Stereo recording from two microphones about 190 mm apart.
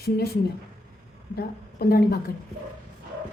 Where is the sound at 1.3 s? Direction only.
55° left (ahead or behind).